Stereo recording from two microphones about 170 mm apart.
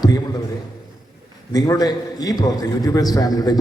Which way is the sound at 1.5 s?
20° left (ahead or behind).